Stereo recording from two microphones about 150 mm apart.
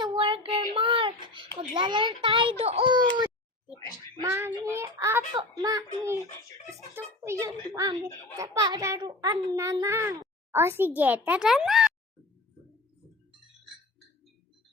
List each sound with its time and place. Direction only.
0.0 s child singing: 35° right (ahead or behind)
1.5 s a child's voice: 30° right (ahead or behind)
4.2 s a child's voice: 15° right (ahead or behind)